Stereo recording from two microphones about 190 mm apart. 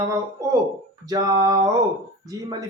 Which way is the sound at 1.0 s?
20° right (ahead or behind).